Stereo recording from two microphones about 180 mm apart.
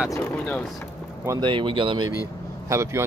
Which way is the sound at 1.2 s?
15° right (ahead or behind).